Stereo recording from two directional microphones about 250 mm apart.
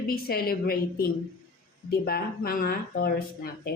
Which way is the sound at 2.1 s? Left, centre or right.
Left.